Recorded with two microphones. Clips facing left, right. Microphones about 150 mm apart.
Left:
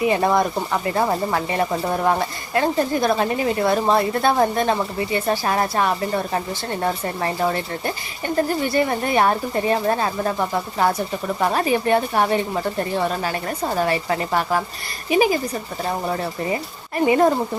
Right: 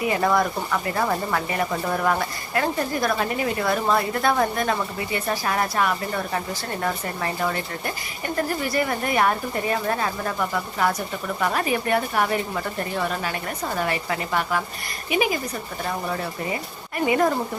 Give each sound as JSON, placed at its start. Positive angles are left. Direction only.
{"t": 0.1, "sound": "speech", "side_deg": 25}
{"t": 17.1, "sound": "speech", "side_deg": 30}